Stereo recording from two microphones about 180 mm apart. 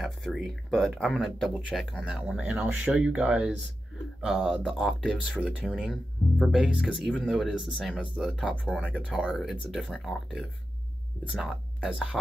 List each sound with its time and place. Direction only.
0.0 s speech: centre (ahead or behind)